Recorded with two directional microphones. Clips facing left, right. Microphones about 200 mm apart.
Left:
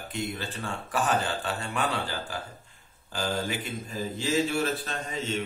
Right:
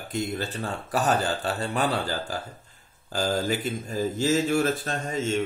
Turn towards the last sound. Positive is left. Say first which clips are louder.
# right 5 dB
turn(degrees=-45)  # may be behind; listen again after turning